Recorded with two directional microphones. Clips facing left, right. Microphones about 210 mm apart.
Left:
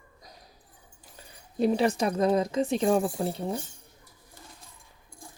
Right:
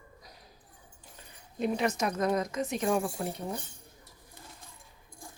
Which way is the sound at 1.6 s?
35° left (ahead or behind).